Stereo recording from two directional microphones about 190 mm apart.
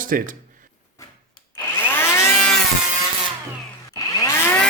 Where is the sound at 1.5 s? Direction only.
10° left (ahead or behind).